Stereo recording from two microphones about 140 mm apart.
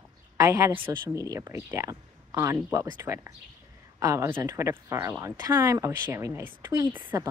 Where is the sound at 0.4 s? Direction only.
25° right (ahead or behind).